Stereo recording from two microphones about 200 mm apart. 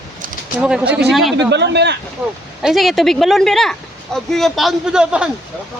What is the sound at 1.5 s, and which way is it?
Speech, 60° right (ahead or behind).